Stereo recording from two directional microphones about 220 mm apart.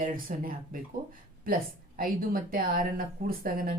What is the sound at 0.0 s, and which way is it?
Speech, 40° right (ahead or behind).